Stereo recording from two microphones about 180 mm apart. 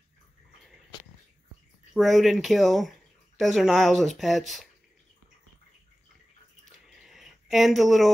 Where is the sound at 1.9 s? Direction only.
Centre (ahead or behind).